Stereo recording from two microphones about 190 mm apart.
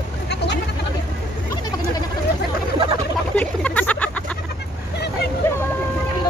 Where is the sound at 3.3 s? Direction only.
5° left (ahead or behind).